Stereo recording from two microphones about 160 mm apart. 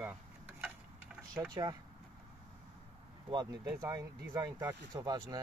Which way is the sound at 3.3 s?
25° right (ahead or behind).